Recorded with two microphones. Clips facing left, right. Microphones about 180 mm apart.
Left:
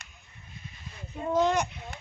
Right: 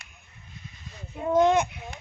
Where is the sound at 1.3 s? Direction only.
20° right (ahead or behind).